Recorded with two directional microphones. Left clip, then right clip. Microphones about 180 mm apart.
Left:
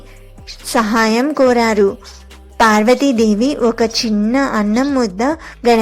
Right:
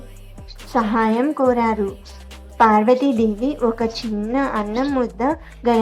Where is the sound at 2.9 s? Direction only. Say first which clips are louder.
Left 5 dB; 15° left (ahead or behind).